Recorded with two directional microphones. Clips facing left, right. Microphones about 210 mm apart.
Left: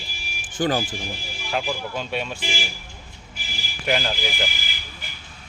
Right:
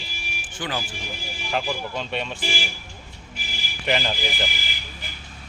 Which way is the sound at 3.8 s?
Centre (ahead or behind).